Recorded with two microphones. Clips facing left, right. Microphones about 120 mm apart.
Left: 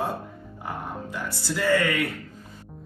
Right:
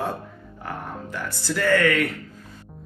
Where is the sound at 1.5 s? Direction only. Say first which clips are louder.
Right 3 dB; 15° left (ahead or behind).